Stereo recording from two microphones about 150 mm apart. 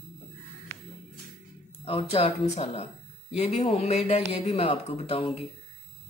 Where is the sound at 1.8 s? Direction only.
40° left (ahead or behind).